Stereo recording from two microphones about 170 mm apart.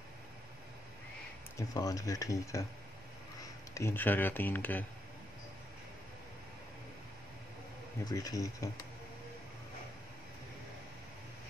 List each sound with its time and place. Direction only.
1.6 s speech: 20° left (ahead or behind)
3.7 s speech: 15° left (ahead or behind)
8.0 s speech: 20° left (ahead or behind)